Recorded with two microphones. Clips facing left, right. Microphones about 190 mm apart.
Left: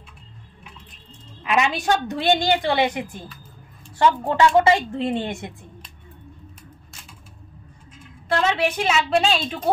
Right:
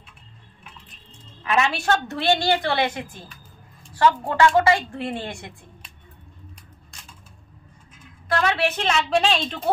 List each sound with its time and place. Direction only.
1.4 s a woman's voice: 15° left (ahead or behind)
4.3 s a woman's voice: 20° left (ahead or behind)
8.3 s a woman's voice: 25° left (ahead or behind); by 9.6 s centre (ahead or behind)